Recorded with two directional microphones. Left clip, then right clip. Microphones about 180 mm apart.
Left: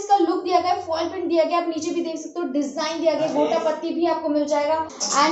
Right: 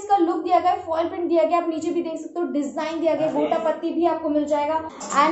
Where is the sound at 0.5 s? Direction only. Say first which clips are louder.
Right 1 dB; 10° left (ahead or behind).